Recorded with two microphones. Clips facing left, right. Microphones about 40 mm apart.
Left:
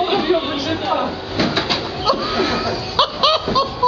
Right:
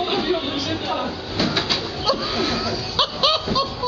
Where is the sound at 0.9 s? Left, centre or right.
Centre.